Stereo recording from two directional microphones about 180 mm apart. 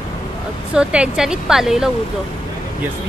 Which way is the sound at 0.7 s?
5° right (ahead or behind).